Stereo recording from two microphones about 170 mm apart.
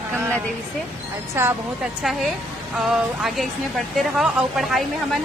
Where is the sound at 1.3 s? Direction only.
15° right (ahead or behind).